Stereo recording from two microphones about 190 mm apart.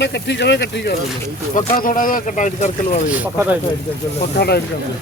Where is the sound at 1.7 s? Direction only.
45° left (ahead or behind).